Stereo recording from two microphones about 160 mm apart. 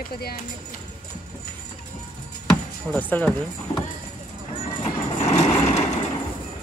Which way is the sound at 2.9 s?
10° left (ahead or behind).